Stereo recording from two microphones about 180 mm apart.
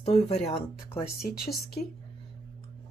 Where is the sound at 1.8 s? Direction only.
40° left (ahead or behind).